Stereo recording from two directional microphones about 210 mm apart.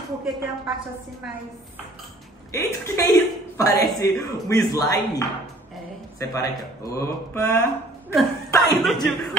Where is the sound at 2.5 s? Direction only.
15° left (ahead or behind).